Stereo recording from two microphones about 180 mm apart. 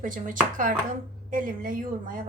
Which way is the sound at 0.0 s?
45° right (ahead or behind).